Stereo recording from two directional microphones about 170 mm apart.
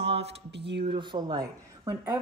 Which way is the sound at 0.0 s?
90° right.